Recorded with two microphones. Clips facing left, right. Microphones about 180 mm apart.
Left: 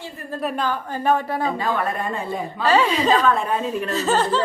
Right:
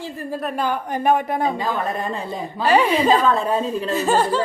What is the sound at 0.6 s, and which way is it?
Speech, 15° right (ahead or behind).